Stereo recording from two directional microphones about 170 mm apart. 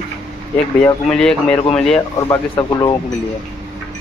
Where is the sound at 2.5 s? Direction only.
25° left (ahead or behind).